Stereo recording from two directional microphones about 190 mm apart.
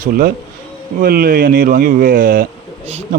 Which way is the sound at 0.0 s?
50° right (ahead or behind).